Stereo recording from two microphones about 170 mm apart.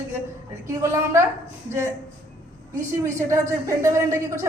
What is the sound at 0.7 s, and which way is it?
Speech, 15° right (ahead or behind).